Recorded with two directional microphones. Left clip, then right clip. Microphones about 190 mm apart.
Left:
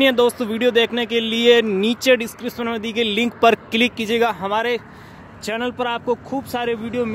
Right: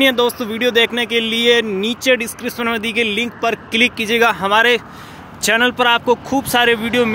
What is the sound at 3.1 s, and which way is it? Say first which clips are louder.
Speech: left 3 dB; 30° left (ahead or behind).